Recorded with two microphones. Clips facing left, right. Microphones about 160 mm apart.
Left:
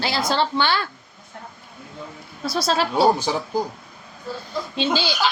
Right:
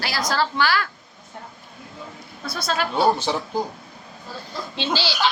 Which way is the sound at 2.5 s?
30° left (ahead or behind).